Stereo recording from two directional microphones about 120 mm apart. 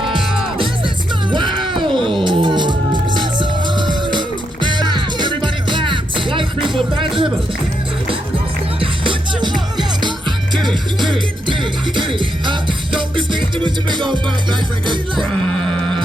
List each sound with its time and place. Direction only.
1.3 s music: 40° right (ahead or behind)
8.8 s music: 45° right (ahead or behind)
10.5 s music: centre (ahead or behind)
11.9 s music: 45° right (ahead or behind)